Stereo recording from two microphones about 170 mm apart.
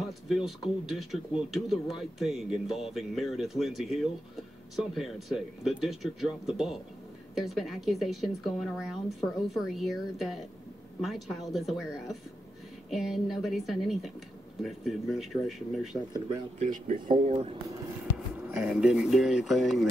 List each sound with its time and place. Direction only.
0.0 s speech: centre (ahead or behind)
16.5 s speech: 45° right (ahead or behind)
17.3 s speech: 35° right (ahead or behind)
18.1 s speech: 5° right (ahead or behind)